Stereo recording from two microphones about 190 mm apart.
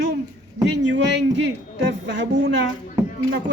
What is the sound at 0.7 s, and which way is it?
A man's voice, 65° right (ahead or behind).